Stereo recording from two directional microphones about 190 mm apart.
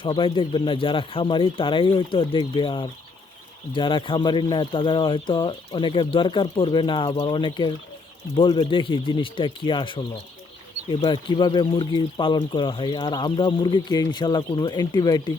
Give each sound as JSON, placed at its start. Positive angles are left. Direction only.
{"t": 0.0, "sound": "speech", "side_deg": 25}